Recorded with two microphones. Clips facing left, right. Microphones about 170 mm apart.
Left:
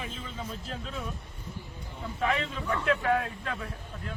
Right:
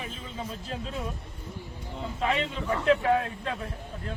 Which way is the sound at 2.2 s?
30° right (ahead or behind).